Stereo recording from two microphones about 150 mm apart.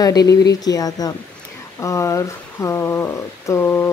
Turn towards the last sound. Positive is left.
turn(degrees=15)  # may be behind; listen again after turning